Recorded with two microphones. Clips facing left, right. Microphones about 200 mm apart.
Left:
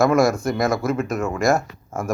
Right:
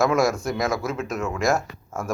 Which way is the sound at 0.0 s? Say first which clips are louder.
Left 4 dB; centre (ahead or behind).